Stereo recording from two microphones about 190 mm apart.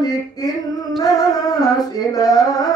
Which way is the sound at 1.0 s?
20° left (ahead or behind).